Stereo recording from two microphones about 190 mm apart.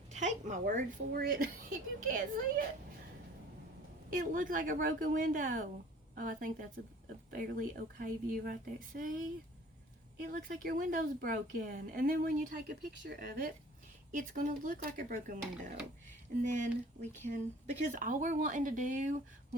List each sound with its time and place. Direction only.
0.1 s a woman's voice: 40° right (ahead or behind)
4.1 s a woman's voice: 45° right (ahead or behind)